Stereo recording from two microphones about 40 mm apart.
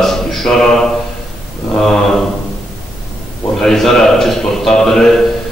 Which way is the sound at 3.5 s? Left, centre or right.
Centre.